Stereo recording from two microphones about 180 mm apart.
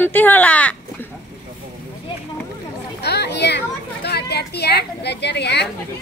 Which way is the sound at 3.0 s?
65° left (ahead or behind).